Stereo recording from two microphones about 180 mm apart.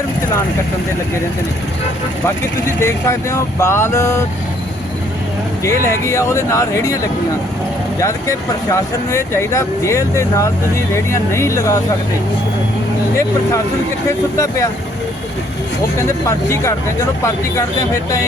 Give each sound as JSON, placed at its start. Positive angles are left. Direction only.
{"t": 2.2, "sound": "speech", "side_deg": 15}
{"t": 5.6, "sound": "speech", "side_deg": 15}
{"t": 14.1, "sound": "speech", "side_deg": 15}
{"t": 16.5, "sound": "speech", "side_deg": 15}